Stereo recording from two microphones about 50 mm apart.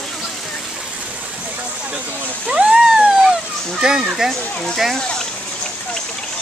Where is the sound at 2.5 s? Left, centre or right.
Centre.